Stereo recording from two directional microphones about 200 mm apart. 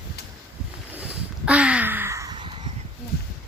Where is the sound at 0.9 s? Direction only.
5° right (ahead or behind); by 2.7 s 25° right (ahead or behind).